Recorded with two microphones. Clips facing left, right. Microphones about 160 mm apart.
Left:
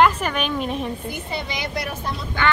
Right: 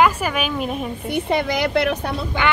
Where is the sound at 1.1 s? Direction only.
70° right (ahead or behind).